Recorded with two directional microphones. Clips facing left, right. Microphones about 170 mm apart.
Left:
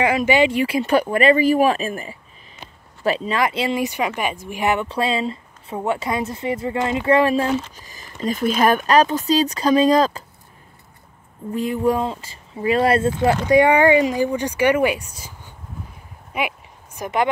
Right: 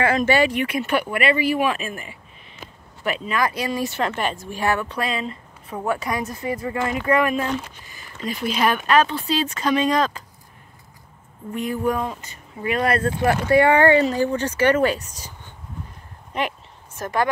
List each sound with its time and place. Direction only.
0.0 s speech: 15° left (ahead or behind)
0.5 s speech: 30° left (ahead or behind)
11.5 s speech: 25° left (ahead or behind); by 15.5 s 10° left (ahead or behind)
16.3 s a sound: 10° left (ahead or behind)